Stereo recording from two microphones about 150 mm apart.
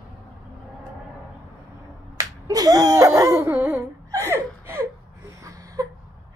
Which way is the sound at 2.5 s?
25° right (ahead or behind).